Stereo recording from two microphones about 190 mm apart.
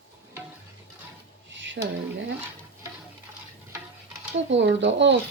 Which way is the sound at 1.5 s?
75° right (ahead or behind).